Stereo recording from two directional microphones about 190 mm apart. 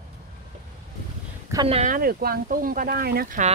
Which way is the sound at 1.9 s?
50° right (ahead or behind).